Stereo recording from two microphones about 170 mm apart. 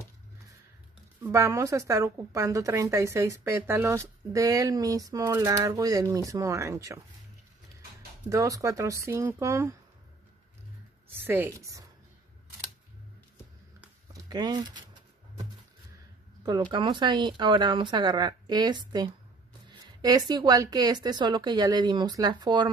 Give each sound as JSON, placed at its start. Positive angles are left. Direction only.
{"t": 1.2, "sound": "a woman's voice", "side_deg": -15}
{"t": 8.3, "sound": "a woman's voice", "side_deg": -20}
{"t": 11.1, "sound": "a woman's voice", "side_deg": -10}
{"t": 14.1, "sound": "speech", "side_deg": -25}
{"t": 16.7, "sound": "speech", "side_deg": -25}